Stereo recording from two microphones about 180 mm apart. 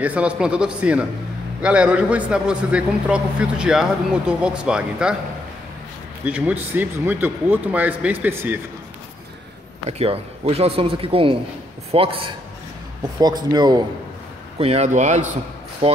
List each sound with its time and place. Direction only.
0.0 s a man's voice: 5° right (ahead or behind)
6.2 s speech: 10° right (ahead or behind)
9.8 s a man's voice: 35° right (ahead or behind)
14.6 s a man's voice: 35° right (ahead or behind)